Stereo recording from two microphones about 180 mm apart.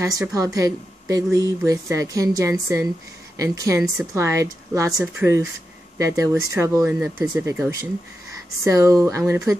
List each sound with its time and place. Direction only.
0.0 s a woman's voice: 20° right (ahead or behind)